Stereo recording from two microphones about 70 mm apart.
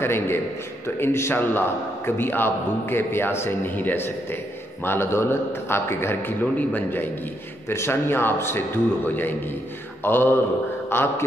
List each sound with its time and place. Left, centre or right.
0.0 s a man's voice: left
10.0 s a man's voice: left